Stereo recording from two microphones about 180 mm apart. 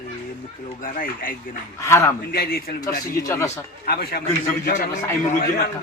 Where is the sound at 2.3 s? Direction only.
55° left (ahead or behind).